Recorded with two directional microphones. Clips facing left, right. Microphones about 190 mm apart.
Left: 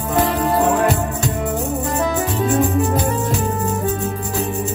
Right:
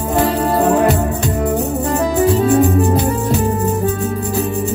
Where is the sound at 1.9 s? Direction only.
35° right (ahead or behind).